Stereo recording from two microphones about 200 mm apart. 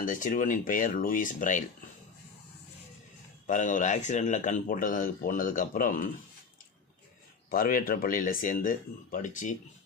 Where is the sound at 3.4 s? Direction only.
40° left (ahead or behind).